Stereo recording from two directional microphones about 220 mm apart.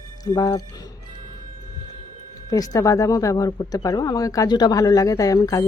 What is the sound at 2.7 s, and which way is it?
Speech, 15° left (ahead or behind).